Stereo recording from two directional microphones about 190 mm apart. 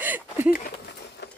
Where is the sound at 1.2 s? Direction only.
60° left (ahead or behind).